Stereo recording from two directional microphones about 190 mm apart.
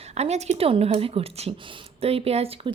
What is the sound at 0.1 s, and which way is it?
Speech, 35° right (ahead or behind).